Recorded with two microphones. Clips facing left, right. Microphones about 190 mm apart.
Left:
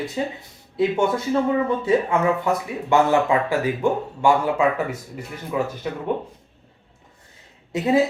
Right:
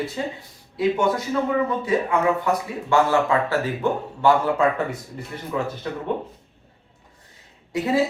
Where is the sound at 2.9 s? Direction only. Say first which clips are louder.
Left 1 dB; 20° left (ahead or behind).